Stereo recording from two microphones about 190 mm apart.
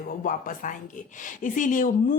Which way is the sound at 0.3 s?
45° left (ahead or behind).